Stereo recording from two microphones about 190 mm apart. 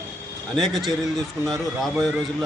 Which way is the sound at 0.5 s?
Centre (ahead or behind).